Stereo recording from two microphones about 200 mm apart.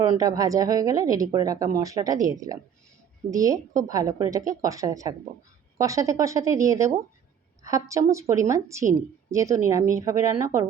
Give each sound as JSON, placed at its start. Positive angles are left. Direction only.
{"t": 0.0, "sound": "speech", "side_deg": -15}